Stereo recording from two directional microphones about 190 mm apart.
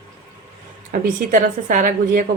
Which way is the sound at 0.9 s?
45° right (ahead or behind).